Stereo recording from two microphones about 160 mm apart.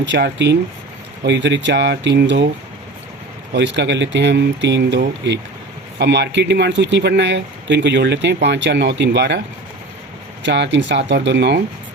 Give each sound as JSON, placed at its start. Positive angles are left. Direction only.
{"t": 0.1, "sound": "speech", "side_deg": -90}
{"t": 3.5, "sound": "speech", "side_deg": -90}
{"t": 10.4, "sound": "speech", "side_deg": -90}